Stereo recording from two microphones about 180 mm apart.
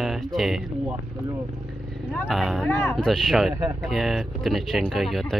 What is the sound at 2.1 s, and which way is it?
Speech, centre (ahead or behind).